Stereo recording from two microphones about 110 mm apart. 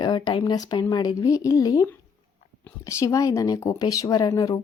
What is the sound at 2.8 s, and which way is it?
Speech, 30° left (ahead or behind).